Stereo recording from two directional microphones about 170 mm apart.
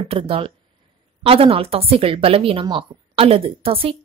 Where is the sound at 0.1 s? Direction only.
30° right (ahead or behind).